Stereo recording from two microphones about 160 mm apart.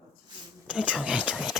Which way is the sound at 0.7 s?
5° right (ahead or behind).